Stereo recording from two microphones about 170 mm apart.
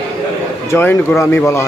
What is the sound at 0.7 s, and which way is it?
Speech, 15° left (ahead or behind).